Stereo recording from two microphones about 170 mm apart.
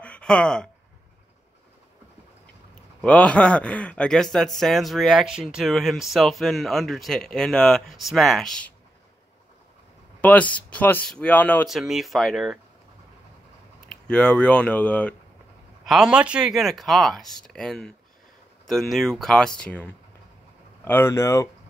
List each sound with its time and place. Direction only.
0.0 s a sound: 5° left (ahead or behind)
3.0 s speech: 5° left (ahead or behind)
10.2 s speech: 10° left (ahead or behind)
11.7 s speech: centre (ahead or behind)
13.8 s speech: 5° left (ahead or behind)